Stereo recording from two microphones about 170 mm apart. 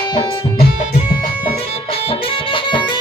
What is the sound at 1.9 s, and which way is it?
Music, 35° left (ahead or behind).